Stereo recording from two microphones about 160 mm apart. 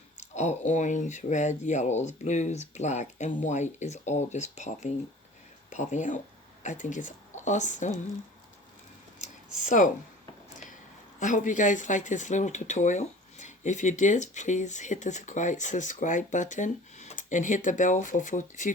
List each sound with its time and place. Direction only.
0.2 s speech: 45° left (ahead or behind)
9.6 s speech: 55° left (ahead or behind)
11.2 s speech: 50° left (ahead or behind)